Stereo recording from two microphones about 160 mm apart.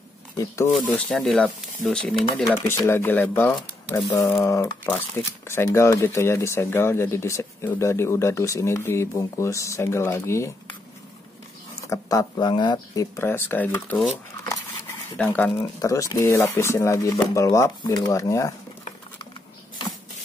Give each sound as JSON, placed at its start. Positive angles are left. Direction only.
{"t": 0.7, "sound": "speech", "side_deg": 5}
{"t": 11.8, "sound": "speech", "side_deg": 20}
{"t": 15.1, "sound": "speech", "side_deg": 10}